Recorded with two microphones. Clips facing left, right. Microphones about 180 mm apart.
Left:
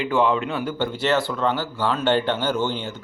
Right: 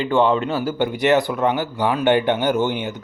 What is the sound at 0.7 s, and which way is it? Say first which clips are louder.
Speech: right 5 dB; 15° right (ahead or behind).